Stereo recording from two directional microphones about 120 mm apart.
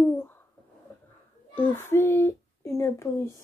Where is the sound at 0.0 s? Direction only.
20° left (ahead or behind).